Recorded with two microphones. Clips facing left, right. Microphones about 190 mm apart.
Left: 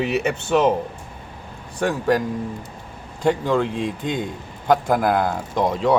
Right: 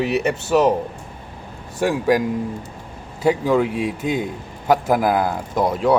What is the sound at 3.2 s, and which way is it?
A man's voice, 5° right (ahead or behind).